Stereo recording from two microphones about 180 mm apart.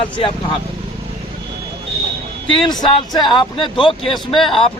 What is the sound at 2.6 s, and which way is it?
Speech, 25° left (ahead or behind).